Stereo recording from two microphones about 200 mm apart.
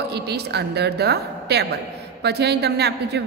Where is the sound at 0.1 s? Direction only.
55° right (ahead or behind).